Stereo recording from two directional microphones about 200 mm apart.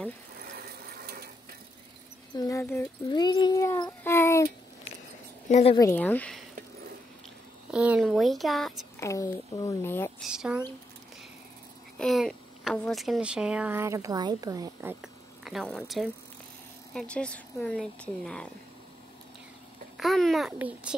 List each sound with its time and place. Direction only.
0.4 s ratchet: 50° right (ahead or behind)
2.3 s speech: 15° left (ahead or behind)
3.1 s speech: 20° left (ahead or behind)
5.5 s a woman's voice: 30° left (ahead or behind)
5.8 s speech: 10° left (ahead or behind)
7.7 s speech: 5° right (ahead or behind)
9.0 s speech: 15° left (ahead or behind)
10.2 s speech: 5° right (ahead or behind)
12.0 s speech: centre (ahead or behind)
20.0 s speech: centre (ahead or behind)